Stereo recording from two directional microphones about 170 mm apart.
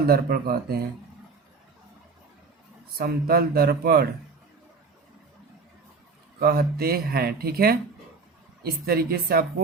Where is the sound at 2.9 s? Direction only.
65° right (ahead or behind).